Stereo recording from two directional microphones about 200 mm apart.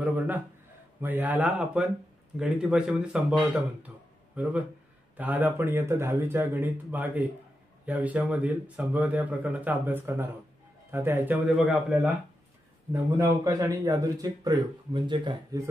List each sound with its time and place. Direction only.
1.0 s a man's voice: 10° right (ahead or behind)
13.2 s a man's voice: 15° right (ahead or behind)